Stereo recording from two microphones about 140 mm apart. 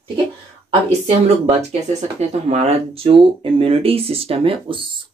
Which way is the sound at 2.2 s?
50° right (ahead or behind).